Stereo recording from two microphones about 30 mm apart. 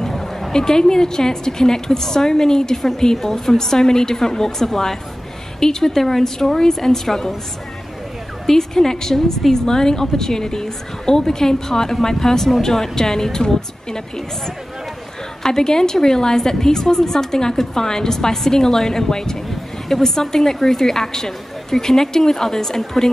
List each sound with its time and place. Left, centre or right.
0.0 s a sound: centre
0.5 s a woman's voice: left
8.5 s a woman's voice: centre
15.4 s a woman's voice: left